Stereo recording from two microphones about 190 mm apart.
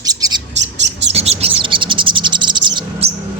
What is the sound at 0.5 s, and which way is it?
Bird, 70° right (ahead or behind).